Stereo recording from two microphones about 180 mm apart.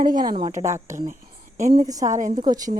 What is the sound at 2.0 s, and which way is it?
Speech, 45° right (ahead or behind).